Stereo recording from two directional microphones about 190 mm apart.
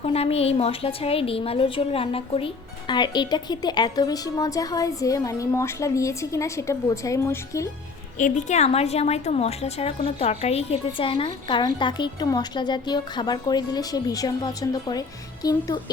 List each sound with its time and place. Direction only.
0.0 s a woman's voice: 30° left (ahead or behind); by 7.7 s 15° left (ahead or behind)
8.2 s a woman's voice: 35° left (ahead or behind); by 15.8 s 20° left (ahead or behind)